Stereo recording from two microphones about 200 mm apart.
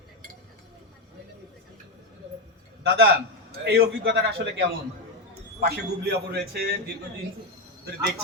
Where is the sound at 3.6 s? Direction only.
60° right (ahead or behind).